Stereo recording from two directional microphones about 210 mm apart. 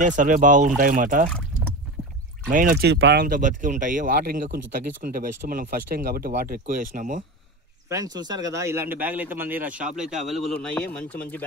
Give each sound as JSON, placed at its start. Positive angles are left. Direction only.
{"t": 0.0, "sound": "speech", "side_deg": -40}
{"t": 2.5, "sound": "speech", "side_deg": -40}
{"t": 3.3, "sound": "speech", "side_deg": -40}
{"t": 7.9, "sound": "speech", "side_deg": -15}